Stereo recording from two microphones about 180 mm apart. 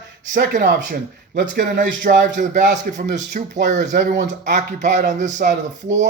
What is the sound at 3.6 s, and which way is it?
Speech, 45° right (ahead or behind).